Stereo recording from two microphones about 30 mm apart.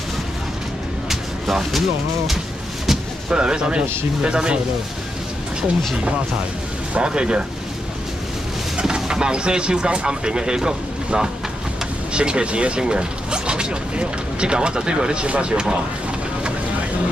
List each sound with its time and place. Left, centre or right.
1.0 s vehicle: centre
3.3 s speech: right
6.9 s speech: right
8.7 s speech: right
15.2 s speech: right